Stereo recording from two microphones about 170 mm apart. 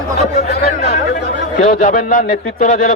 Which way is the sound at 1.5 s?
45° left (ahead or behind).